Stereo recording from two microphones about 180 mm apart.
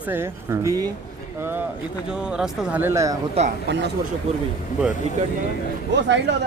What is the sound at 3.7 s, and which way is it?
Speech, 75° right (ahead or behind).